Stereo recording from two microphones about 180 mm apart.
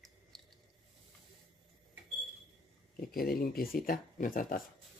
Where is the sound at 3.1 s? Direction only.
55° left (ahead or behind).